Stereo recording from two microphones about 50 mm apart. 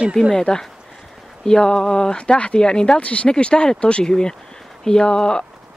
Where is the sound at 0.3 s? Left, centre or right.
Centre.